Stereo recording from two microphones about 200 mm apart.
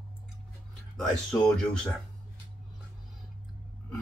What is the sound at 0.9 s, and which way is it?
Speech, 5° left (ahead or behind).